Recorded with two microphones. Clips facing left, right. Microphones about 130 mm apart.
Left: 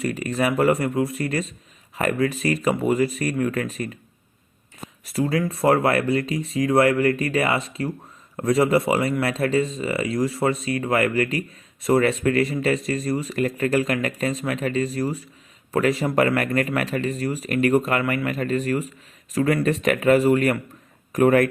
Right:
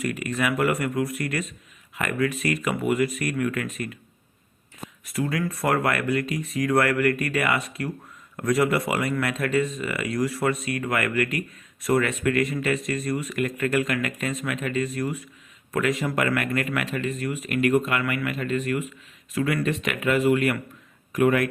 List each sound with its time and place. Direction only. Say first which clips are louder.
0.0 s speech: left 3 dB; 30° left (ahead or behind)
5.0 s speech: left 4 dB; 30° left (ahead or behind)